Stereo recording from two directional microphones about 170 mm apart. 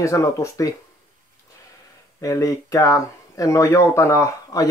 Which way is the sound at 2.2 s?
20° left (ahead or behind).